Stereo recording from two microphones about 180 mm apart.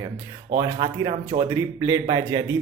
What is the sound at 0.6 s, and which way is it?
Speech, 25° right (ahead or behind).